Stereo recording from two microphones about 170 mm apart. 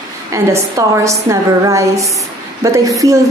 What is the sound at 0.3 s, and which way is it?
A woman's voice, 15° right (ahead or behind).